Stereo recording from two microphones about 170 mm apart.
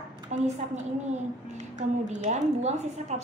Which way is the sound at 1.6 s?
50° right (ahead or behind).